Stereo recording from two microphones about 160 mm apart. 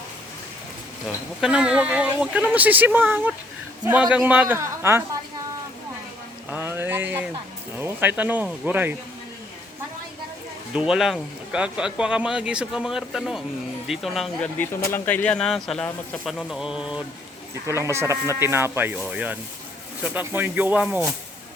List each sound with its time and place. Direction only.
1.0 s speech: 5° right (ahead or behind)
6.5 s a sound: 15° right (ahead or behind)
7.8 s speech: 10° right (ahead or behind)
10.8 s speech: 5° right (ahead or behind)
14.6 s speech: 15° left (ahead or behind); by 17.0 s 5° right (ahead or behind)
17.7 s speech: 15° right (ahead or behind)